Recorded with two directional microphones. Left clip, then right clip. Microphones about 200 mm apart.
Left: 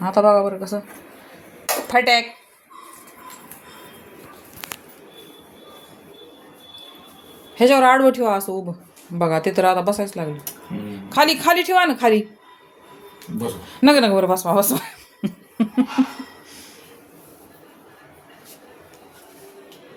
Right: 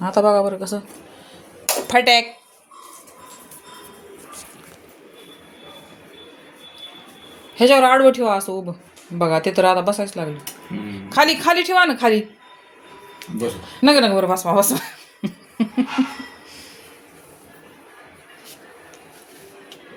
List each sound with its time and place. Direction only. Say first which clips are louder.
0.0 s speech: left 1 dB; 5° right (ahead or behind)
1.9 s speech: right 2 dB; 10° right (ahead or behind)
7.5 s a woman's voice: right 1 dB; centre (ahead or behind)
13.7 s speech: even; 5° left (ahead or behind)